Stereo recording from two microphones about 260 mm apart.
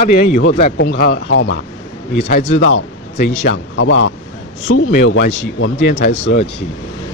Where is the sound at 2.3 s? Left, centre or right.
Left.